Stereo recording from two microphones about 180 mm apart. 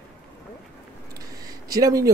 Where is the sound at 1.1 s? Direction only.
20° right (ahead or behind).